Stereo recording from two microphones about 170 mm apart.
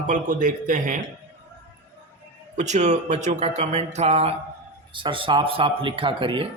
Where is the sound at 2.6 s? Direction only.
45° right (ahead or behind).